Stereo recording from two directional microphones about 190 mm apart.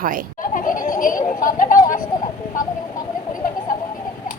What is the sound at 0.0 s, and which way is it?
Speech, 45° right (ahead or behind).